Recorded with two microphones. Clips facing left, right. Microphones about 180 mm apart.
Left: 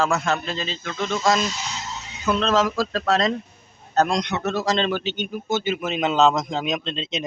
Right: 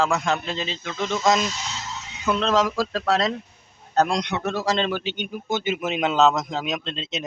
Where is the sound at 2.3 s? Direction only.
15° right (ahead or behind).